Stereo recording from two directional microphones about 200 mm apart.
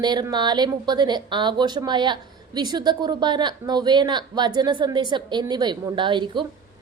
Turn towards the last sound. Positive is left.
turn(degrees=-25)  # may be behind; listen again after turning